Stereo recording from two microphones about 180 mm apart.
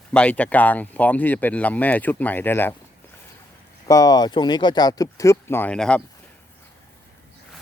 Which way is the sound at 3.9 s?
20° left (ahead or behind).